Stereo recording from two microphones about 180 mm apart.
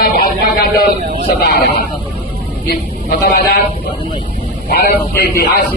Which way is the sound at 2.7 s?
55° left (ahead or behind).